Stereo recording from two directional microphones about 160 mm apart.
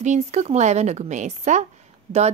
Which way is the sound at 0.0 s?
45° right (ahead or behind).